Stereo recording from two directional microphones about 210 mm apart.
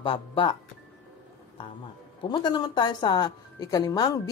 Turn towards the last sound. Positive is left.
turn(degrees=20)  # may be behind; listen again after turning